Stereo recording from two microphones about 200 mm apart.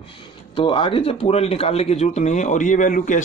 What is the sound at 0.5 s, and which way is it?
Speech, 25° left (ahead or behind).